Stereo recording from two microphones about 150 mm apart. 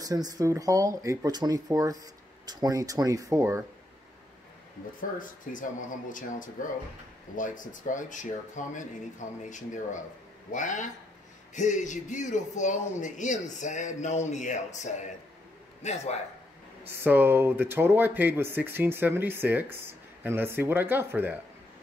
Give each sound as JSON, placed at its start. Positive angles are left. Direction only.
{"t": 0.0, "sound": "speech", "side_deg": -25}
{"t": 5.2, "sound": "speech", "side_deg": 60}
{"t": 7.3, "sound": "speech", "side_deg": 60}
{"t": 16.8, "sound": "speech", "side_deg": -15}